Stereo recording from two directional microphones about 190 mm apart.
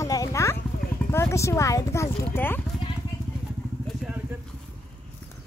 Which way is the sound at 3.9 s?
Centre (ahead or behind).